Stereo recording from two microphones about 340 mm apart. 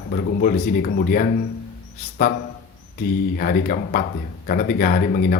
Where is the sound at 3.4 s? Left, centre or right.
Left.